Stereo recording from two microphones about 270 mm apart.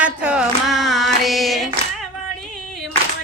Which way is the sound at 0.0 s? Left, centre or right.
Centre.